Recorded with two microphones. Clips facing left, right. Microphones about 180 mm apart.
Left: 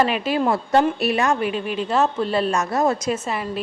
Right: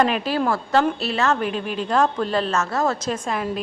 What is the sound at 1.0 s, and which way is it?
A woman's voice, 15° left (ahead or behind).